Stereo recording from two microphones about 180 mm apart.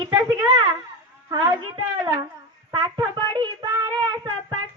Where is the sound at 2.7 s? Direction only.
25° right (ahead or behind).